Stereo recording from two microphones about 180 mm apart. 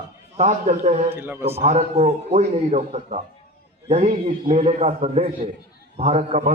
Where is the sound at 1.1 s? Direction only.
10° right (ahead or behind).